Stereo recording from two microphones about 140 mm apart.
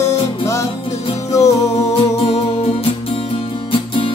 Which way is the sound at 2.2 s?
45° left (ahead or behind).